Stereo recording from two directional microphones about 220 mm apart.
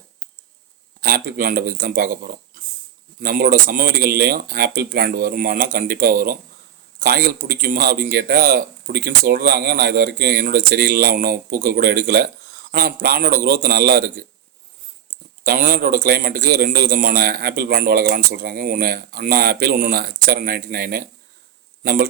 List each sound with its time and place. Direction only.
1.0 s a man's voice: 40° right (ahead or behind)
15.4 s a man's voice: 40° right (ahead or behind)